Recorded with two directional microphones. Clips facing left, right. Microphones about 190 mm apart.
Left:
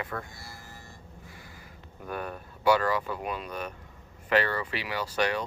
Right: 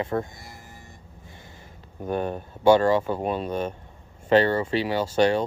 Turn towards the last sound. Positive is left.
turn(degrees=-30)  # may be behind; listen again after turning